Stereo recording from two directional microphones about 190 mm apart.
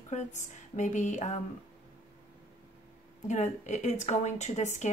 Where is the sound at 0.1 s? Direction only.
40° left (ahead or behind).